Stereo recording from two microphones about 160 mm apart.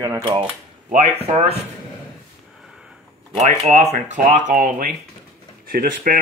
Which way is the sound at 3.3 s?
50° right (ahead or behind).